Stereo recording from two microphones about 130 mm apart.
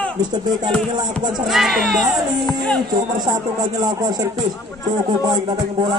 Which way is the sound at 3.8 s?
30° right (ahead or behind).